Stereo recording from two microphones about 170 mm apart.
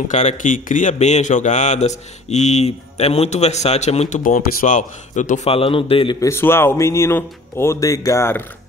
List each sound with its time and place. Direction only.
0.1 s speech: 45° left (ahead or behind)
4.2 s speech: 55° left (ahead or behind)
5.5 s a man's voice: 30° left (ahead or behind)
6.2 s speech: 15° left (ahead or behind)